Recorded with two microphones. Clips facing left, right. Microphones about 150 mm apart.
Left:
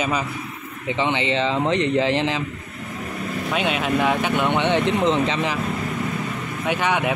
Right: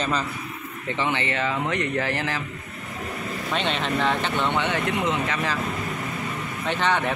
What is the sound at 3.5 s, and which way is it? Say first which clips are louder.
Speech: left 3 dB; 10° left (ahead or behind).